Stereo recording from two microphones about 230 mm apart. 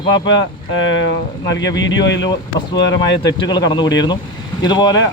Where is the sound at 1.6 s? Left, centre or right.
Left.